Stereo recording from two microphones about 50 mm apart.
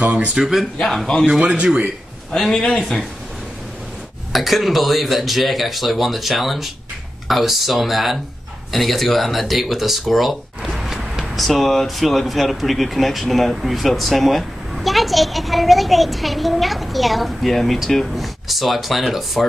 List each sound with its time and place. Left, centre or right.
0.0 s speech: right
0.4 s speech: centre
0.7 s speech: centre
1.4 s speech: centre
2.3 s speech: centre
4.3 s speech: centre